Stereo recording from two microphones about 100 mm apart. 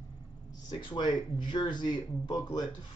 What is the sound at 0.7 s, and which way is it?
Speech, 50° left (ahead or behind).